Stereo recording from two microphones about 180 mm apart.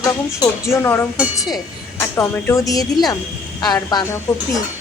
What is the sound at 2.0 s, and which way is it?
A woman's voice, 15° left (ahead or behind).